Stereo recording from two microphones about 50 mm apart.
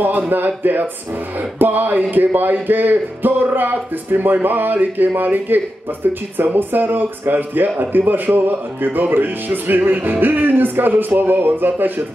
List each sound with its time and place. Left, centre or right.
0.0 s speech: right
1.6 s speech: right